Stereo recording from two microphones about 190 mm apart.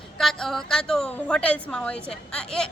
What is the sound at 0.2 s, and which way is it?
Speech, centre (ahead or behind).